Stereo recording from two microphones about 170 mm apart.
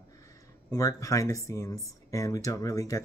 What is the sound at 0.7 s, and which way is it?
Speech, 20° left (ahead or behind).